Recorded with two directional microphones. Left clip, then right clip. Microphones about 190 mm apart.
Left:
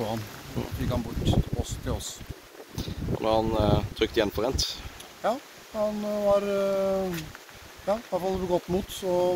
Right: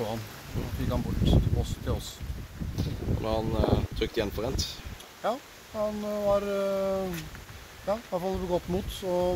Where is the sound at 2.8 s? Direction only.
45° left (ahead or behind).